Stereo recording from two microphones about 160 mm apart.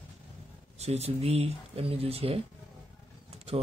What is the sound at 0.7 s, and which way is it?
A man's voice, 40° right (ahead or behind).